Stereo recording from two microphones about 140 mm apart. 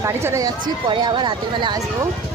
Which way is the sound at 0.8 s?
35° right (ahead or behind).